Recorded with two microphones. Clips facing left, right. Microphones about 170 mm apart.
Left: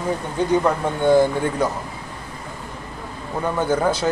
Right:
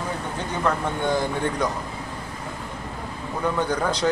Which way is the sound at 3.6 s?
5° left (ahead or behind).